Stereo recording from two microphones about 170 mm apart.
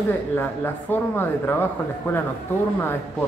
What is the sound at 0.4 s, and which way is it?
Speech, 10° left (ahead or behind).